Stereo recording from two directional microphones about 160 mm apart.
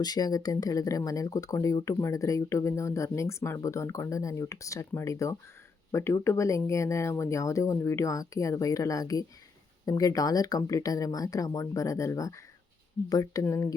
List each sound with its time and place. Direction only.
0.0 s speech: 25° left (ahead or behind)